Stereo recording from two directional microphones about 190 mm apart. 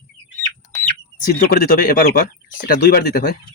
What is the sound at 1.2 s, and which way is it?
Speech, 50° left (ahead or behind).